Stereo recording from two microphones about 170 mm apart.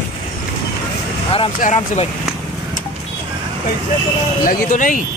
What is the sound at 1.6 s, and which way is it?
Speech, 45° left (ahead or behind).